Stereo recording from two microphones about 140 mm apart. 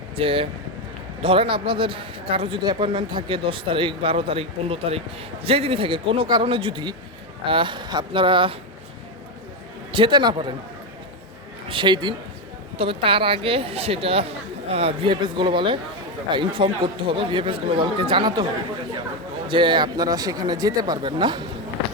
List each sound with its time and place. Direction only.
0.2 s speech: 40° right (ahead or behind)
9.9 s speech: 35° right (ahead or behind)
11.7 s speech: 35° right (ahead or behind)
12.7 s speech: 45° right (ahead or behind)
19.5 s speech: 35° right (ahead or behind)